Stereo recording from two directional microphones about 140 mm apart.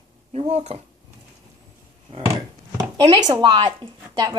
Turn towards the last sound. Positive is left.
turn(degrees=-30)  # may be behind; listen again after turning